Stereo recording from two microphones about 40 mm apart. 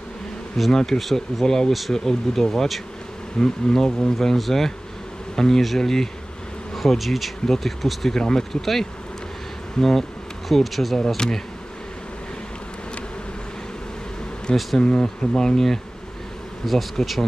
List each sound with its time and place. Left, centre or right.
0.7 s speech: centre
1.7 s speech: centre
7.8 s speech: centre
8.1 s speech: centre
9.8 s speech: centre
14.8 s speech: left
16.6 s speech: centre